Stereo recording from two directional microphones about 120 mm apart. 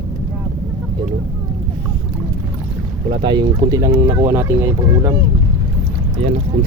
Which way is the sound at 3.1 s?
40° right (ahead or behind).